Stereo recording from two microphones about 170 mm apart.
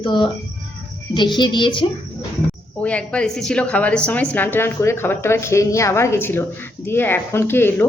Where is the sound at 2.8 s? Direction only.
5° left (ahead or behind).